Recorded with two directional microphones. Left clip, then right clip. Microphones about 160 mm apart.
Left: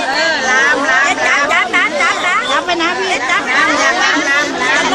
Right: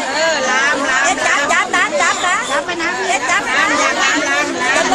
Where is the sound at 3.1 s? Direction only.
45° right (ahead or behind).